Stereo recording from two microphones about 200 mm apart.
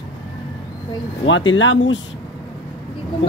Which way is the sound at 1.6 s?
70° left (ahead or behind).